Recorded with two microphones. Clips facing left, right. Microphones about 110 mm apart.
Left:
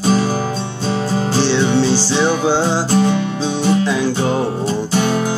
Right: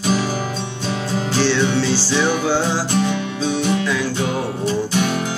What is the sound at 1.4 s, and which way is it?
Music, 20° left (ahead or behind).